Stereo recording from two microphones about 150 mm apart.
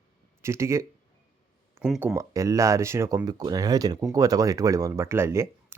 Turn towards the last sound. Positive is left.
turn(degrees=-20)  # may be behind; listen again after turning